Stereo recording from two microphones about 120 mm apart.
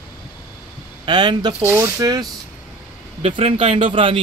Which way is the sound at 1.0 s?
40° right (ahead or behind).